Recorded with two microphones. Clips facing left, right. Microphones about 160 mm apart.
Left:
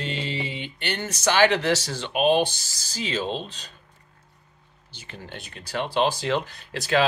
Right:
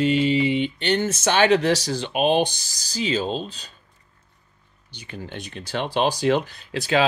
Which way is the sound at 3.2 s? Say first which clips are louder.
Right 2 dB; 35° right (ahead or behind).